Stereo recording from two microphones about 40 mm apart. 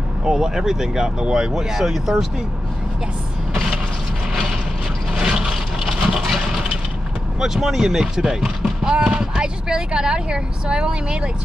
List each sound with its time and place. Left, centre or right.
0.2 s speech: centre
1.5 s speech: centre
5.1 s a sound: centre
6.0 s vehicle: centre
7.3 s speech: centre